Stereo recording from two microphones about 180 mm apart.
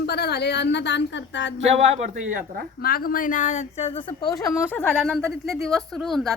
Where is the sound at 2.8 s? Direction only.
55° left (ahead or behind); by 3.9 s 40° left (ahead or behind).